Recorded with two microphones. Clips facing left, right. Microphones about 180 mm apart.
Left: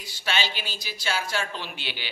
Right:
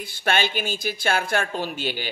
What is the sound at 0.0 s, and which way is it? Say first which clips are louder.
A man's voice: right 6 dB; 55° right (ahead or behind).